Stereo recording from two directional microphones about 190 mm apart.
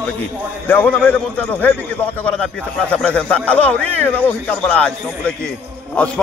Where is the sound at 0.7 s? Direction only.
10° left (ahead or behind).